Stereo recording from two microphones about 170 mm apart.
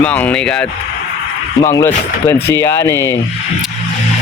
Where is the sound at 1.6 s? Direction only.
15° left (ahead or behind).